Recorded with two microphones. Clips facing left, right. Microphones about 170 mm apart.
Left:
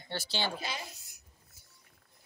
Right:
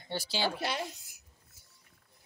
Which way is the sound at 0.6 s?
70° right (ahead or behind).